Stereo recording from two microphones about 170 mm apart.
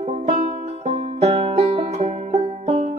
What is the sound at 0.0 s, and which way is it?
Music, 35° right (ahead or behind).